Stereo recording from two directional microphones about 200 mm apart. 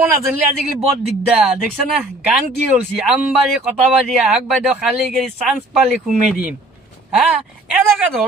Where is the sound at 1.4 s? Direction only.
5° right (ahead or behind).